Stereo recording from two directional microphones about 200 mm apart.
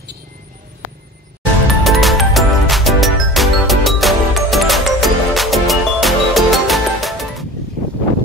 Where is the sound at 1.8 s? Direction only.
Centre (ahead or behind).